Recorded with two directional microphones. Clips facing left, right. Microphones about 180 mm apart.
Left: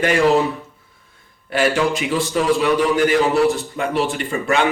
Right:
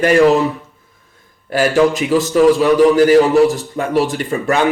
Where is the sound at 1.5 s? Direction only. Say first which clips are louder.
Right 5 dB; 40° right (ahead or behind).